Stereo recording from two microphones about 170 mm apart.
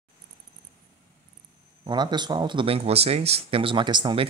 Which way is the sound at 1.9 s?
25° right (ahead or behind).